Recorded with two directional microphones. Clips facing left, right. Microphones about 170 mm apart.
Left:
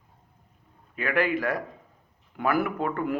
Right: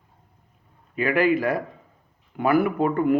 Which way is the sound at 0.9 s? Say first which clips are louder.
Right 5 dB; 5° right (ahead or behind).